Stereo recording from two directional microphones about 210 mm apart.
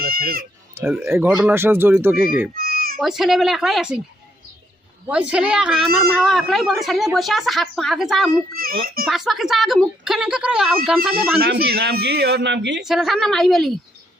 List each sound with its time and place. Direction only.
0.0 s speech: 45° right (ahead or behind)
0.8 s speech: 10° right (ahead or behind)
2.6 s children playing: 45° right (ahead or behind)
3.0 s a woman's voice: centre (ahead or behind)
5.0 s a woman's voice: 5° right (ahead or behind)
8.5 s a man's voice: 45° right (ahead or behind)
9.0 s a woman's voice: centre (ahead or behind)
11.3 s a man's voice: 50° right (ahead or behind)
12.8 s a woman's voice: centre (ahead or behind)